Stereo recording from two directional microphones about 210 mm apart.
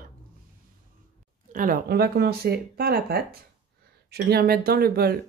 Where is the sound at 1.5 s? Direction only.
40° right (ahead or behind).